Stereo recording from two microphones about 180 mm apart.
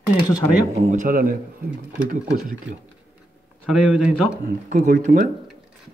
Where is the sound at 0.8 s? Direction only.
45° right (ahead or behind).